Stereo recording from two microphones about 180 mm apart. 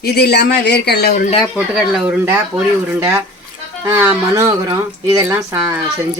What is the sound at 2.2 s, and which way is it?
Speech, 10° right (ahead or behind).